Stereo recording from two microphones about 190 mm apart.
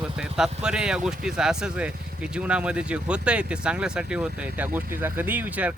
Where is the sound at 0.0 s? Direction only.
5° right (ahead or behind).